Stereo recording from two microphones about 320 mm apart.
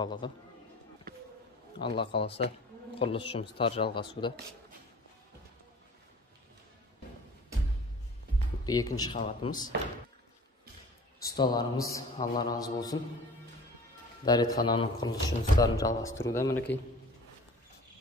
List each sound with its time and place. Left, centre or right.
0.0 s speech: centre
1.1 s a sound: right
1.8 s speech: centre
8.6 s speech: centre
11.3 s speech: centre
14.2 s speech: centre